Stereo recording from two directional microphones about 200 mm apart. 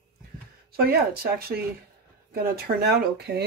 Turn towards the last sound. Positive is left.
turn(degrees=-55)  # may be behind; listen again after turning